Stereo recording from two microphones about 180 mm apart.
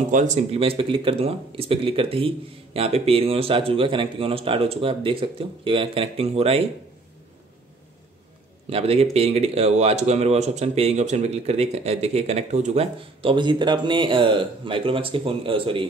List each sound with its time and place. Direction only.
0.1 s speech: 40° right (ahead or behind)
8.6 s speech: 35° right (ahead or behind)